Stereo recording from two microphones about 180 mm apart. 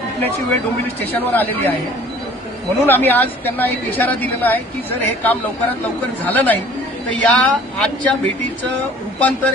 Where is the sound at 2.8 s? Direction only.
10° left (ahead or behind).